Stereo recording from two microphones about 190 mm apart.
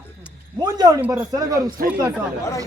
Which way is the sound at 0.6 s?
20° right (ahead or behind).